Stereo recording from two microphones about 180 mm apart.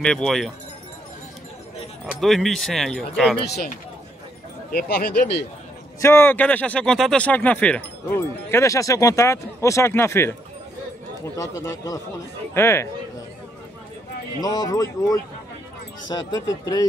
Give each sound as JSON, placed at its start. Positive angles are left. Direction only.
{"t": 0.0, "sound": "speech", "side_deg": 5}
{"t": 2.0, "sound": "speech", "side_deg": 0}
{"t": 4.7, "sound": "speech", "side_deg": 65}
{"t": 5.9, "sound": "speech", "side_deg": 15}
{"t": 11.3, "sound": "speech", "side_deg": 15}
{"t": 14.4, "sound": "speech", "side_deg": 20}